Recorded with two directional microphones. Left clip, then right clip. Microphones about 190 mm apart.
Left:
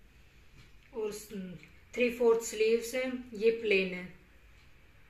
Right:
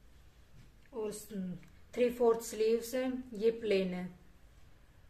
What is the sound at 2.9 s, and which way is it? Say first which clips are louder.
A woman's voice: left 2 dB; 25° right (ahead or behind).